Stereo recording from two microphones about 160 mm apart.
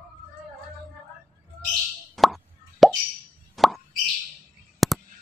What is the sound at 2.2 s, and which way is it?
Plop, centre (ahead or behind).